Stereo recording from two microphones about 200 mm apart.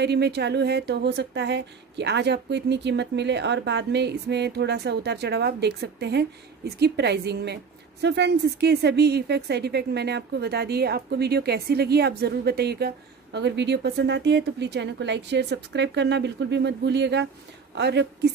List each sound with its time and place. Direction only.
0.0 s speech: 55° right (ahead or behind)